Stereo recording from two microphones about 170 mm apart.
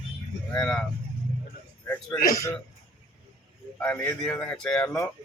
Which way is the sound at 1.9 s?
5° left (ahead or behind).